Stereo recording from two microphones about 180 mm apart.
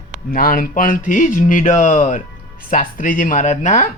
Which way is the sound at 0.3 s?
55° left (ahead or behind).